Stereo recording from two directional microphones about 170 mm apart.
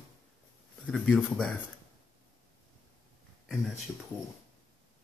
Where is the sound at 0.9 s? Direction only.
Centre (ahead or behind).